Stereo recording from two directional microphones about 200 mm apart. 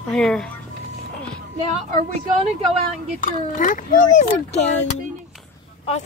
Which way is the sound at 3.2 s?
40° left (ahead or behind).